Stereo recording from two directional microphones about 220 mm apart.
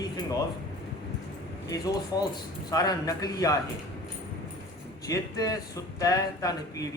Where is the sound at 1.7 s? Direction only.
15° left (ahead or behind).